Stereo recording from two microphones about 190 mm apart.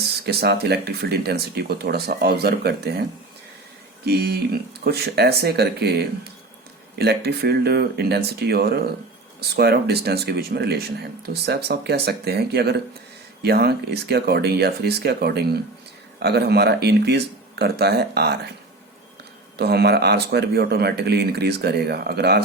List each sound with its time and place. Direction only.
0.0 s speech: 55° right (ahead or behind)
4.0 s speech: 55° right (ahead or behind)
19.5 s speech: 60° right (ahead or behind)